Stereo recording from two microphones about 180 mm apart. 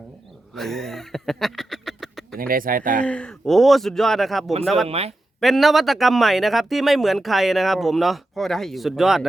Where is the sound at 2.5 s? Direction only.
50° right (ahead or behind).